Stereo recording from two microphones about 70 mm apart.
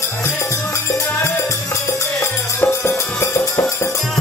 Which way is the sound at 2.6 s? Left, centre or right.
Left.